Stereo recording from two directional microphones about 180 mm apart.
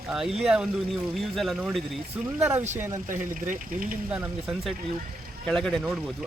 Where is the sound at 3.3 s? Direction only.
50° right (ahead or behind).